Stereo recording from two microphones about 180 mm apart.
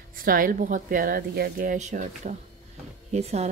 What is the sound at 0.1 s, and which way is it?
A woman's voice, 50° right (ahead or behind).